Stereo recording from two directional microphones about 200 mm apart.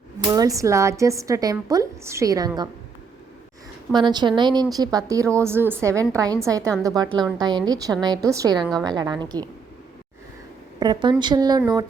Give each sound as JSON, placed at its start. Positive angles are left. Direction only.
{"t": 0.2, "sound": "a woman's voice", "side_deg": -20}
{"t": 3.9, "sound": "a woman's voice", "side_deg": -20}
{"t": 10.8, "sound": "speech", "side_deg": -20}